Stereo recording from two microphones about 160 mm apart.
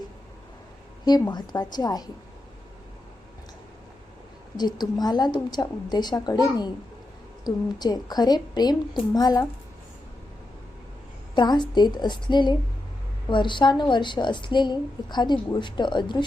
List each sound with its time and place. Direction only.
1.0 s a woman's voice: 25° left (ahead or behind)
4.5 s a woman's voice: 25° left (ahead or behind)
7.4 s a woman's voice: 25° left (ahead or behind)
11.3 s a woman's voice: 30° left (ahead or behind)